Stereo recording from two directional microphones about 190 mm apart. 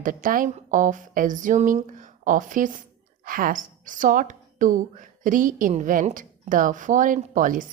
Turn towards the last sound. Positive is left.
turn(degrees=-45)  # may be behind; listen again after turning